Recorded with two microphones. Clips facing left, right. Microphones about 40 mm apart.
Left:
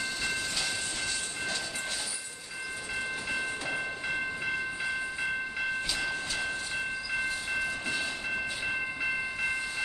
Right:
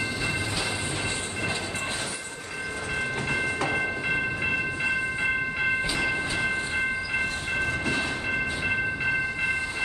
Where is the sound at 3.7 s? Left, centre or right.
Right.